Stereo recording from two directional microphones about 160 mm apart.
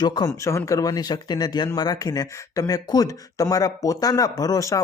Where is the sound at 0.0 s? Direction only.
25° left (ahead or behind).